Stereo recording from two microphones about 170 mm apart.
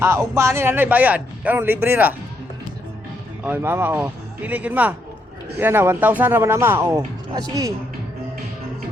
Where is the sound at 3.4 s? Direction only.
10° right (ahead or behind).